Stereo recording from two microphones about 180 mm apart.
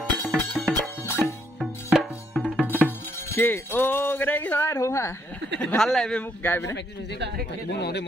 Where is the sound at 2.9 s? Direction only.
10° left (ahead or behind).